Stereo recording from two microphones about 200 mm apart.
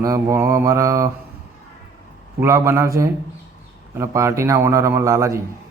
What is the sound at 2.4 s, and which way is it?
A man's voice, 15° right (ahead or behind).